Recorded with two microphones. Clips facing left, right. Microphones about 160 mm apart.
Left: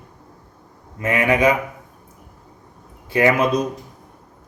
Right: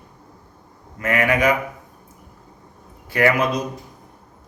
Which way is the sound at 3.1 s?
20° left (ahead or behind).